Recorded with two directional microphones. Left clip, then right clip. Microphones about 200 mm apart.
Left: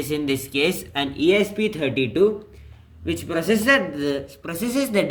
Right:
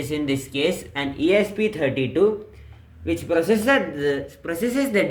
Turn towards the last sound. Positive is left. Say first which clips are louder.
# right 1 dB
turn(degrees=40)  # may be behind; listen again after turning